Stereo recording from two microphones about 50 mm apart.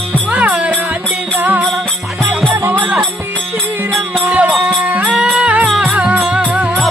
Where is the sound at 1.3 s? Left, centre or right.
Right.